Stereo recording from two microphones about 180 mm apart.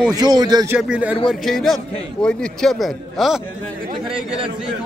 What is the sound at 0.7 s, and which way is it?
Speech, 5° right (ahead or behind).